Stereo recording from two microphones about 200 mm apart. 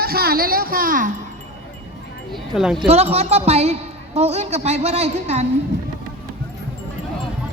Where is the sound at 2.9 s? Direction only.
30° right (ahead or behind).